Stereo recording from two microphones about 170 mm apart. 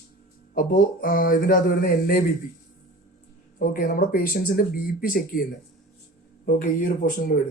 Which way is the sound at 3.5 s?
55° left (ahead or behind).